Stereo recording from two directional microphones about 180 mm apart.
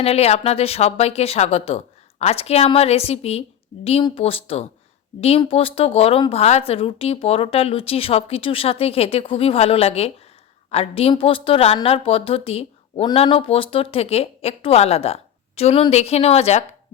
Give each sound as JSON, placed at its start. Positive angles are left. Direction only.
{"t": 0.0, "sound": "a woman's voice", "side_deg": 35}